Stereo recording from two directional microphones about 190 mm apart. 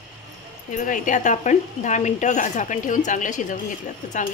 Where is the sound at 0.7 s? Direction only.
45° left (ahead or behind).